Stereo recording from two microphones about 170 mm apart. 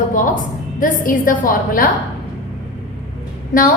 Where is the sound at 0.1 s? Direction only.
55° left (ahead or behind).